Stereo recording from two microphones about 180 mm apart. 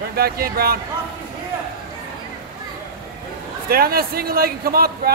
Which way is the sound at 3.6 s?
55° right (ahead or behind).